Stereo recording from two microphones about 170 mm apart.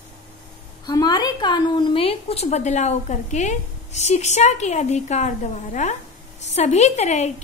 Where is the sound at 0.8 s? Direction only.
25° left (ahead or behind).